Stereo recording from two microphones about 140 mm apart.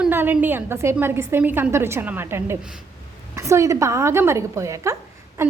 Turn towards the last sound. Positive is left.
turn(degrees=-20)  # may be behind; listen again after turning